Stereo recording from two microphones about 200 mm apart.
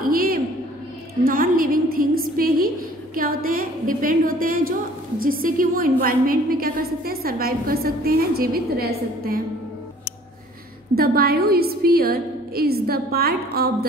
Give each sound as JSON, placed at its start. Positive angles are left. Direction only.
{"t": 0.0, "sound": "a sound", "side_deg": -50}
{"t": 1.2, "sound": "a woman's voice", "side_deg": -45}
{"t": 11.0, "sound": "a woman's voice", "side_deg": -50}